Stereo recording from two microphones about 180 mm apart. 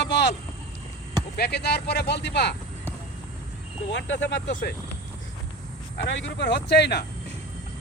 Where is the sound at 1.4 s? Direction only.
65° left (ahead or behind).